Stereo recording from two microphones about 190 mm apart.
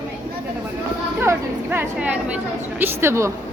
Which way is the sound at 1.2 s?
10° right (ahead or behind).